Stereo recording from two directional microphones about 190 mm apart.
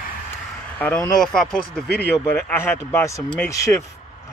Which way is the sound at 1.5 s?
55° left (ahead or behind).